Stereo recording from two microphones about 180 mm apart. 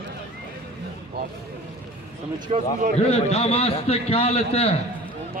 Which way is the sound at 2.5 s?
40° right (ahead or behind).